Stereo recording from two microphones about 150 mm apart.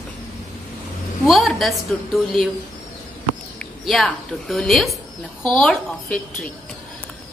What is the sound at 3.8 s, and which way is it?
A woman's voice, centre (ahead or behind).